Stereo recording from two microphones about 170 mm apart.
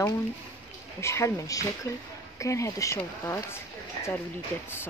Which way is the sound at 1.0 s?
15° left (ahead or behind).